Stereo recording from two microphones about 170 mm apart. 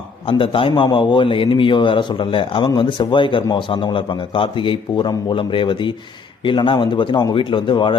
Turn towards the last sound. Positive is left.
turn(degrees=30)  # may be behind; listen again after turning